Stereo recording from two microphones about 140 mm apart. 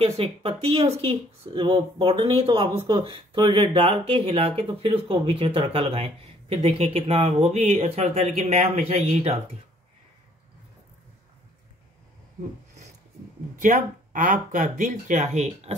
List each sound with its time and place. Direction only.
0.0 s speech: 45° right (ahead or behind)
13.6 s speech: 65° right (ahead or behind)